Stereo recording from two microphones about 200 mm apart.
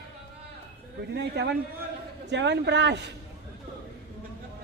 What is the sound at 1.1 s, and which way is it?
A man's voice, 55° right (ahead or behind).